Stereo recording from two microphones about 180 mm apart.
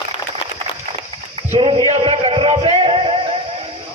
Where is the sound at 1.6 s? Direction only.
30° right (ahead or behind).